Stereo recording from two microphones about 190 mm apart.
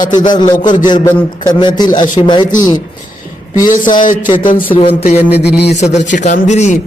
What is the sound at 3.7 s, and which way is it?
Speech, 45° left (ahead or behind).